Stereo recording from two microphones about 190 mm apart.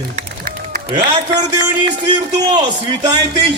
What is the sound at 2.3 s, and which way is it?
Speech, 20° right (ahead or behind).